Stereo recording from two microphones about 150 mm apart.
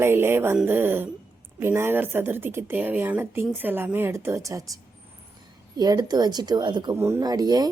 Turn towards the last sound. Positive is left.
turn(degrees=-25)  # may be behind; listen again after turning